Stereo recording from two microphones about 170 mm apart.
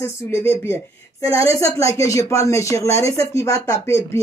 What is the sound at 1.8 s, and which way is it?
Speech, 20° left (ahead or behind).